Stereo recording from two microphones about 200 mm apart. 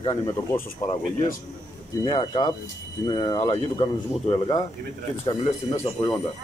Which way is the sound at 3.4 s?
30° left (ahead or behind).